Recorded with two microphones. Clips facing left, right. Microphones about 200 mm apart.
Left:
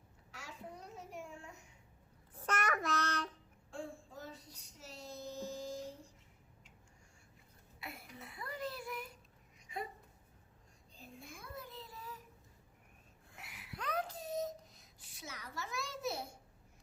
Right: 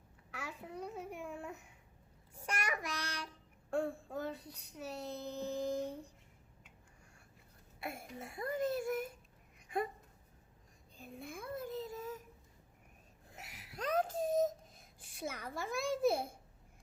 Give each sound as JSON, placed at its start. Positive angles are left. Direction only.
{"t": 0.3, "sound": "babbling", "side_deg": -55}
{"t": 2.5, "sound": "child singing", "side_deg": -10}
{"t": 3.7, "sound": "child singing", "side_deg": -60}
{"t": 7.8, "sound": "a sound", "side_deg": -50}
{"t": 10.9, "sound": "child singing", "side_deg": -55}
{"t": 13.3, "sound": "whimper", "side_deg": -40}